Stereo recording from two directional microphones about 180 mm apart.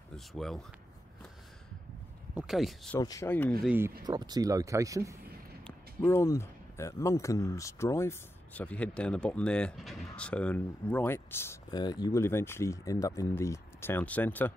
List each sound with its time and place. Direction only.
0.1 s speech: centre (ahead or behind)
2.3 s speech: centre (ahead or behind)
3.0 s speech: 20° left (ahead or behind)
3.6 s speech: 10° right (ahead or behind)
4.0 s speech: 25° right (ahead or behind)
5.6 s speech: 10° left (ahead or behind)